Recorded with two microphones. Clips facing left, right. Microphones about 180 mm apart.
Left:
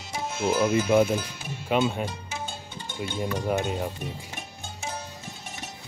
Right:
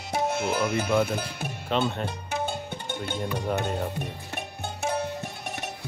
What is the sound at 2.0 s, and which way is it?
Music, 60° right (ahead or behind).